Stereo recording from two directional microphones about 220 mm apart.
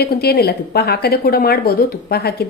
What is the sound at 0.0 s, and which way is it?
A woman's voice, 45° left (ahead or behind).